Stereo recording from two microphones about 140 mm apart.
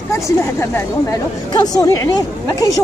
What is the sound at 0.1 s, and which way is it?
Speech, 20° left (ahead or behind).